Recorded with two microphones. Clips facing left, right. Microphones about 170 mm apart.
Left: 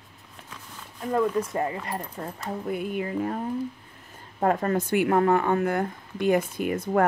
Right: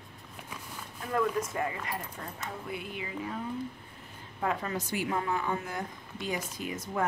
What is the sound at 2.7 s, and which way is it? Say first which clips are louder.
Music: left 12 dB; 50° left (ahead or behind).